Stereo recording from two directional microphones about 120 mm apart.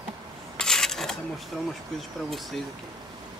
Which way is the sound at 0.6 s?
5° left (ahead or behind).